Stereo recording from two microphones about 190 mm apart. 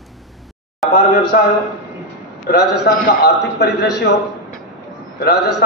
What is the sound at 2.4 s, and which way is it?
A man's voice, 55° left (ahead or behind).